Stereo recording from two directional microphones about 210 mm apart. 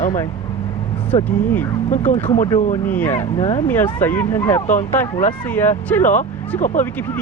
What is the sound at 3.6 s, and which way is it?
Speech, 10° left (ahead or behind).